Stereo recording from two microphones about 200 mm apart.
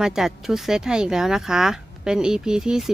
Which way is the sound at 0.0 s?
5° right (ahead or behind).